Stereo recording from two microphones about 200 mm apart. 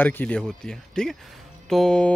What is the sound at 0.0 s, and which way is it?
Speech, 5° left (ahead or behind).